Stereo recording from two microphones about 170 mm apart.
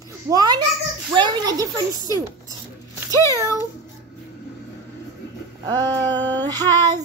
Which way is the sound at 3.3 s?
15° right (ahead or behind).